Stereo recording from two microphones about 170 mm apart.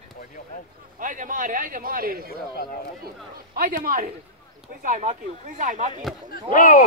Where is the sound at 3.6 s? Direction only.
55° right (ahead or behind).